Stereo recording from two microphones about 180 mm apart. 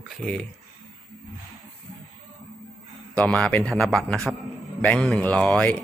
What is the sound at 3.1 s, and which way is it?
Speech, 5° left (ahead or behind).